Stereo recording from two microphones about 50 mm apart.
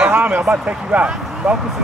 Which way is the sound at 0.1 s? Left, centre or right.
Right.